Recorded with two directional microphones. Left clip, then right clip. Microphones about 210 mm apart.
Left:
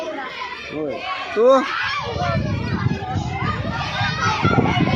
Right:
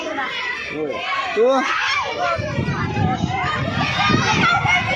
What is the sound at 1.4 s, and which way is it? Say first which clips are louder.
Speech: left 3 dB; 20° left (ahead or behind).